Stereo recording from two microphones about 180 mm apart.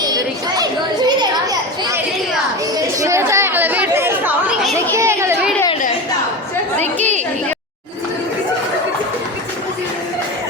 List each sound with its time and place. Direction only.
0.0 s children playing: 20° right (ahead or behind)
3.0 s chatter: 15° right (ahead or behind)